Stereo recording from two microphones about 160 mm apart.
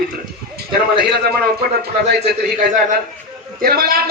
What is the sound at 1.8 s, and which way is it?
A man's voice, 90° right.